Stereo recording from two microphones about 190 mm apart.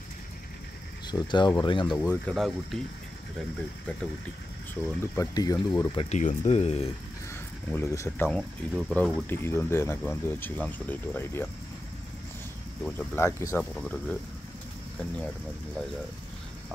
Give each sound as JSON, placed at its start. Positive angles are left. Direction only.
{"t": 1.0, "sound": "speech", "side_deg": 25}
{"t": 2.0, "sound": "speech", "side_deg": 5}
{"t": 4.8, "sound": "speech", "side_deg": 15}
{"t": 6.0, "sound": "speech", "side_deg": 35}
{"t": 7.7, "sound": "speech", "side_deg": 15}
{"t": 8.3, "sound": "speech", "side_deg": 0}
{"t": 12.8, "sound": "speech", "side_deg": 10}
{"t": 13.6, "sound": "speech", "side_deg": 5}